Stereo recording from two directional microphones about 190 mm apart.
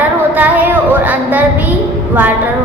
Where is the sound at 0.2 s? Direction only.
10° right (ahead or behind).